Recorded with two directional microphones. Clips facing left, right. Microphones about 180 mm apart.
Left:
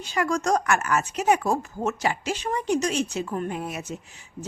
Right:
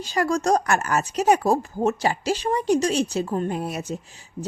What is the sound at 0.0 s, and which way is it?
Speech, 35° right (ahead or behind).